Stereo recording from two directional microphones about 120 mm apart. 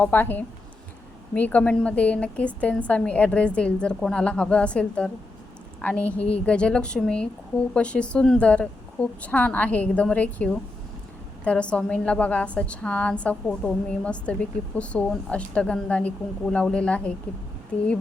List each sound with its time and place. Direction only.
0.0 s a woman's voice: 15° left (ahead or behind)